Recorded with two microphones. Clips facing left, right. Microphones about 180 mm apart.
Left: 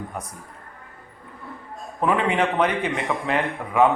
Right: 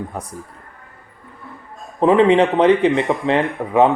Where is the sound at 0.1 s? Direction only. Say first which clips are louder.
Right 4 dB; 30° right (ahead or behind).